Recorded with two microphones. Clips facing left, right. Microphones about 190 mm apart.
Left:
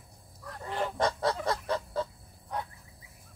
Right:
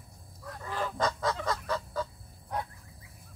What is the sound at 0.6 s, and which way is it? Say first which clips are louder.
Goose: left 2 dB; 25° left (ahead or behind).